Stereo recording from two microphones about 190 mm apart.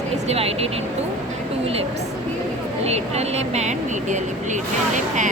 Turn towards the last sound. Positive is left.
turn(degrees=-40)  # may be behind; listen again after turning